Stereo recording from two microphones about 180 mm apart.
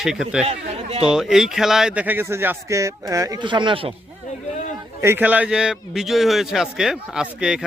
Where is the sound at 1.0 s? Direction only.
5° right (ahead or behind); by 3.9 s 30° right (ahead or behind).